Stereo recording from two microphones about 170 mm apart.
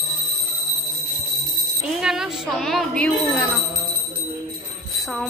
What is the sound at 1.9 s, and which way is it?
Speech, 5° right (ahead or behind).